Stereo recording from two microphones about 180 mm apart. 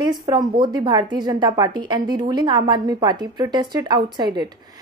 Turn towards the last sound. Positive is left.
turn(degrees=-25)  # may be behind; listen again after turning